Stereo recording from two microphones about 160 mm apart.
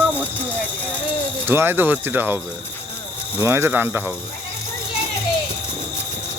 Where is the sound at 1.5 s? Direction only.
15° right (ahead or behind).